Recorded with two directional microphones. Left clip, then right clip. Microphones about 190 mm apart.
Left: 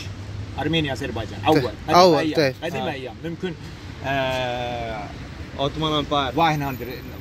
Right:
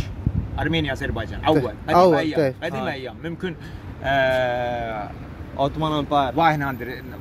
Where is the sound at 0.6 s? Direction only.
10° left (ahead or behind).